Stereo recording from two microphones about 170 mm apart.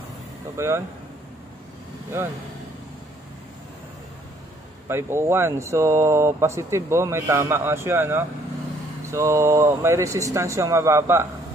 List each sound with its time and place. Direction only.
0.6 s speech: 15° right (ahead or behind)
4.8 s speech: 15° right (ahead or behind)